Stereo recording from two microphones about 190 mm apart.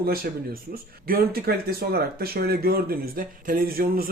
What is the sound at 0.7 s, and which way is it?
Speech, 50° right (ahead or behind).